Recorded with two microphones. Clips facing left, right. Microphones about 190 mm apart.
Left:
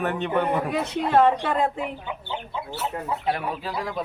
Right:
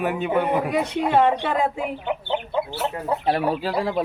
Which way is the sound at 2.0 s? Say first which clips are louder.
Right 7 dB; 65° right (ahead or behind).